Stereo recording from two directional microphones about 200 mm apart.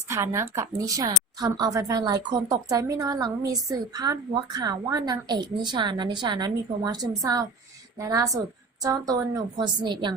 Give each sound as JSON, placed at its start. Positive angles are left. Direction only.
{"t": 0.1, "sound": "a woman's voice", "side_deg": -15}